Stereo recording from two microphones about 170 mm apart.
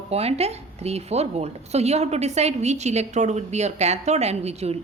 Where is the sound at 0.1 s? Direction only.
35° right (ahead or behind).